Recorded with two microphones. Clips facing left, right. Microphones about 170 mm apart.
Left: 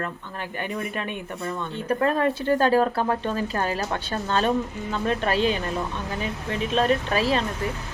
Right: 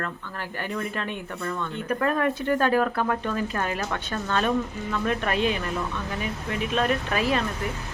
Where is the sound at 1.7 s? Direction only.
30° left (ahead or behind).